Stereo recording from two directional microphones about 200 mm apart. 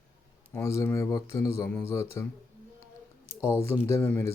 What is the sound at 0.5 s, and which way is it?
Speech, 15° left (ahead or behind).